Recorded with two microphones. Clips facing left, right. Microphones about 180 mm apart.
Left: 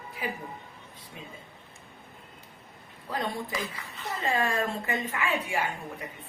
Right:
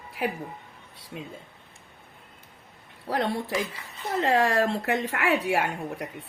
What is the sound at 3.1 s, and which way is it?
A woman's voice, 70° right (ahead or behind).